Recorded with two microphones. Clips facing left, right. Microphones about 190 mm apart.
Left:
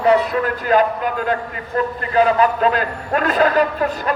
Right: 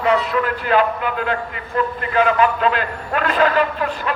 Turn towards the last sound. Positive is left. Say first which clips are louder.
# left 2 dB
turn(degrees=40)  # may be behind; listen again after turning